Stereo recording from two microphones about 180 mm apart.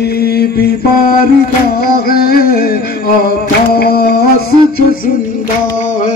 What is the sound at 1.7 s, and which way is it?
Music, 60° left (ahead or behind).